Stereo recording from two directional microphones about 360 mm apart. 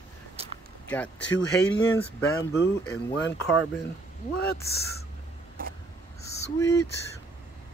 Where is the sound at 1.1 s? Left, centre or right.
Left.